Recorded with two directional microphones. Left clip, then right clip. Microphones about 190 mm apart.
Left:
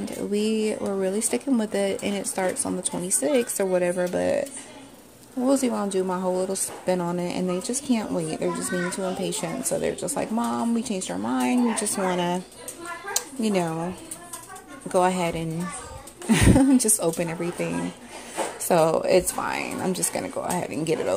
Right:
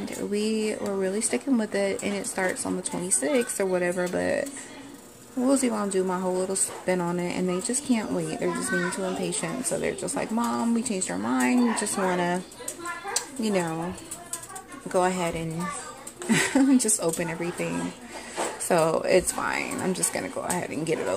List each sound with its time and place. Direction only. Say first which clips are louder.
0.0 s speech: left 2 dB; 10° left (ahead or behind)
13.1 s a sound: left 2 dB; 10° left (ahead or behind)
14.9 s speech: left 3 dB; 15° left (ahead or behind)